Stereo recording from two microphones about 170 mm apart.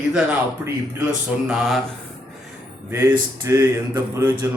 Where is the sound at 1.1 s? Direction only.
5° right (ahead or behind).